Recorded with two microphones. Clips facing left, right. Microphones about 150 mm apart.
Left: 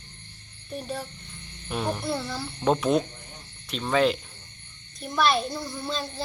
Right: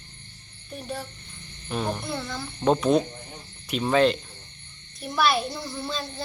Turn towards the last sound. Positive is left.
turn(degrees=0)  # may be behind; listen again after turning